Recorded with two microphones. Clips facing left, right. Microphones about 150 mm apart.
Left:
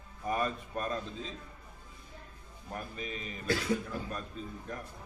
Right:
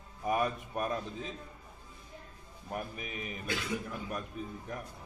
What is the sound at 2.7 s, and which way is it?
A man's voice, 15° right (ahead or behind).